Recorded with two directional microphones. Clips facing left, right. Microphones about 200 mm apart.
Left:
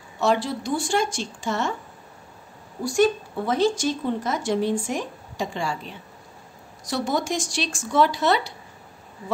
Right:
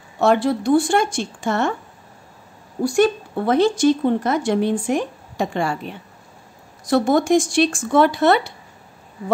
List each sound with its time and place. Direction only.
0.2 s speech: 55° right (ahead or behind)
2.8 s speech: 60° right (ahead or behind)